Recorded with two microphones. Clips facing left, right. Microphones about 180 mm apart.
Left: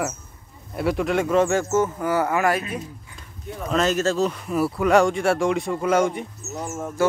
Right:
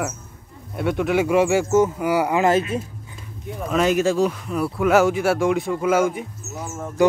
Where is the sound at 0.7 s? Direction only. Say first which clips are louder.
Right 1 dB; centre (ahead or behind); by 2.8 s 25° right (ahead or behind).